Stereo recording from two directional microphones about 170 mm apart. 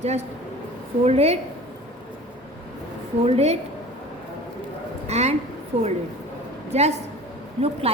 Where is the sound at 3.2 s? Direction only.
40° right (ahead or behind).